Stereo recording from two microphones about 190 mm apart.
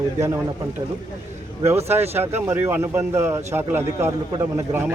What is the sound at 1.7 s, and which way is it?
A man's voice, 15° right (ahead or behind).